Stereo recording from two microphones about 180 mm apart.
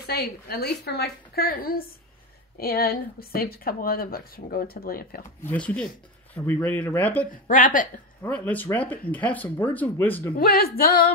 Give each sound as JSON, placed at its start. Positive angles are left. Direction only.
{"t": 0.0, "sound": "speech", "side_deg": 60}
{"t": 5.4, "sound": "speech", "side_deg": 10}
{"t": 7.4, "sound": "a woman's voice", "side_deg": 50}
{"t": 8.2, "sound": "speech", "side_deg": 10}
{"t": 10.3, "sound": "speech", "side_deg": 55}